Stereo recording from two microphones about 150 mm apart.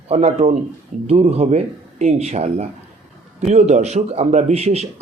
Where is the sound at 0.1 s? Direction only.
45° right (ahead or behind).